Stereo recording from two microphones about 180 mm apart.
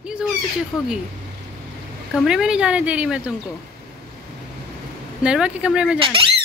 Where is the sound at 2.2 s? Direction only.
5° right (ahead or behind).